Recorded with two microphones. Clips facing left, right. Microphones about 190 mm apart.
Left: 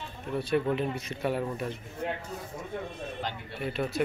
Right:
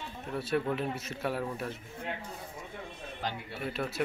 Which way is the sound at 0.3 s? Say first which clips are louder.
Left 4 dB; 5° right (ahead or behind).